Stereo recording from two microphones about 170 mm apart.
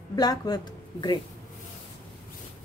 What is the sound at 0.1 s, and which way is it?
Speech, 25° left (ahead or behind).